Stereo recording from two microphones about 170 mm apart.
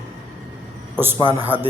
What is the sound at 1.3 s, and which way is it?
Speech, 10° right (ahead or behind).